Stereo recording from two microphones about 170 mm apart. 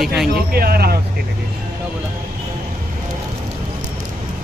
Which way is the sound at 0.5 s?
65° right (ahead or behind).